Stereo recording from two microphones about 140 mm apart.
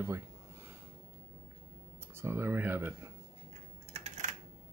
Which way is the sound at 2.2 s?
15° right (ahead or behind).